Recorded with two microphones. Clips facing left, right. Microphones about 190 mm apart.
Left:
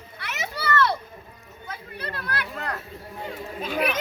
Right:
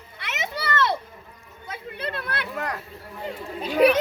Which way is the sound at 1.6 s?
25° right (ahead or behind).